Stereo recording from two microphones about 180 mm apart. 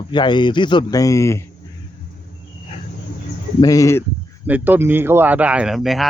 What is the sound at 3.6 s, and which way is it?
Speech, 20° left (ahead or behind).